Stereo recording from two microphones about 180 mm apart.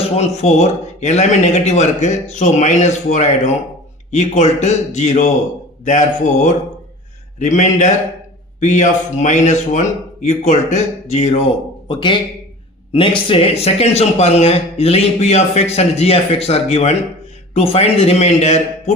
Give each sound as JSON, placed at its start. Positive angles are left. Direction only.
{"t": 0.2, "sound": "a man's voice", "side_deg": 40}
{"t": 11.9, "sound": "a man's voice", "side_deg": 25}